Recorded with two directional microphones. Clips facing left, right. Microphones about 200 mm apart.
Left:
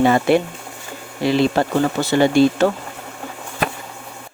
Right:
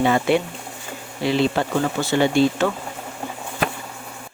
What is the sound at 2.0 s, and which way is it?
Speech, 40° left (ahead or behind).